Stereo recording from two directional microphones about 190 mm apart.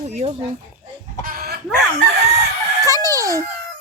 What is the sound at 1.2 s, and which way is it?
Chicken, 50° right (ahead or behind).